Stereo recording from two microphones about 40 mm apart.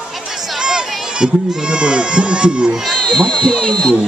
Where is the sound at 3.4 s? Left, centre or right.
Centre.